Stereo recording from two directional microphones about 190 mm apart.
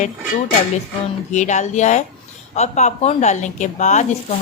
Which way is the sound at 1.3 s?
40° left (ahead or behind).